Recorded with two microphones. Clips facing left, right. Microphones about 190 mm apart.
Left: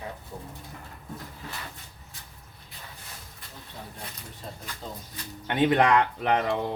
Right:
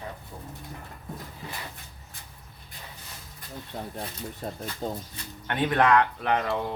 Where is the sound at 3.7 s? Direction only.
55° right (ahead or behind).